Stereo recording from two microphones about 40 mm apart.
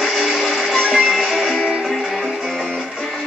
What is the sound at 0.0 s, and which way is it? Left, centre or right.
Music, centre.